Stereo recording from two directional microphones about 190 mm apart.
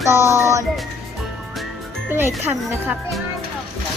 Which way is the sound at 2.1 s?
10° right (ahead or behind).